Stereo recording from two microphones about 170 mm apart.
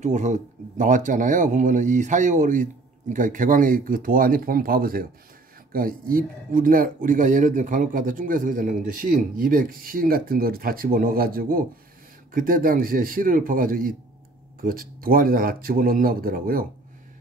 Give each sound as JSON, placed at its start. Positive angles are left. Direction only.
{"t": 0.0, "sound": "speech", "side_deg": -45}